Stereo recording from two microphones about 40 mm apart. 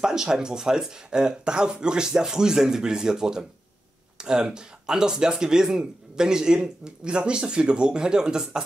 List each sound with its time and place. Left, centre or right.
0.0 s speech: centre